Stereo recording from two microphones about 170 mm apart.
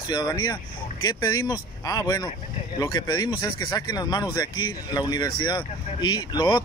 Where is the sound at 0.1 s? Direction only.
25° left (ahead or behind).